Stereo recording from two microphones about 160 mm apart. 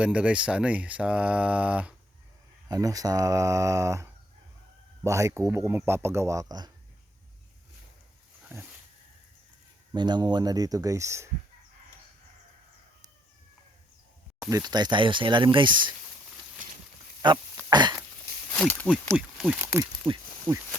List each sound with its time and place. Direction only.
0.0 s speech: 5° right (ahead or behind)
2.6 s speech: 20° right (ahead or behind)
9.9 s speech: 30° right (ahead or behind)
14.5 s speech: 25° right (ahead or behind)
16.6 s a sound: 55° right (ahead or behind)
17.2 s speech: 30° right (ahead or behind)
17.7 s a sound: 25° right (ahead or behind)
18.5 s speech: 10° left (ahead or behind)
19.1 s speech: 5° right (ahead or behind)